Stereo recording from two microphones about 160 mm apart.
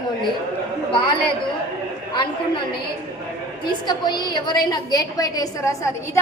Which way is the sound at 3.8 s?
25° left (ahead or behind).